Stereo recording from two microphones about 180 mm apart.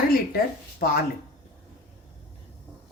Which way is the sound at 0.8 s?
50° left (ahead or behind).